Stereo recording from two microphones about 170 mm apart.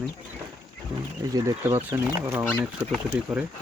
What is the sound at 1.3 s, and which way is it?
Speech, 20° right (ahead or behind).